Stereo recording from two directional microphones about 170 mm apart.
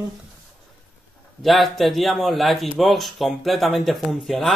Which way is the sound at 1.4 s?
Centre (ahead or behind).